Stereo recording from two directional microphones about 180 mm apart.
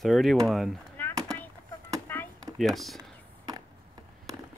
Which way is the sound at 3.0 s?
20° right (ahead or behind).